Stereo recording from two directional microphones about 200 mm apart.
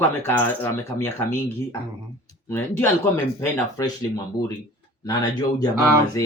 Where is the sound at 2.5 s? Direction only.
10° left (ahead or behind).